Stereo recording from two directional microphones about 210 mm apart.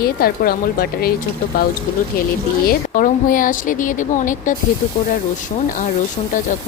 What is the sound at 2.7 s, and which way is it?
A woman's voice, 40° left (ahead or behind).